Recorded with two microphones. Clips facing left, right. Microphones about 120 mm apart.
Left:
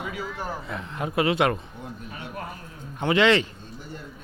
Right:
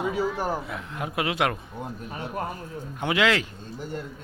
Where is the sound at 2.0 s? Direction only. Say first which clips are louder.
Right 5 dB; 35° right (ahead or behind).